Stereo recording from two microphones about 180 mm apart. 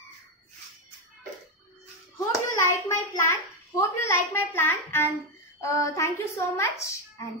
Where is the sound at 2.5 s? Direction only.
15° left (ahead or behind).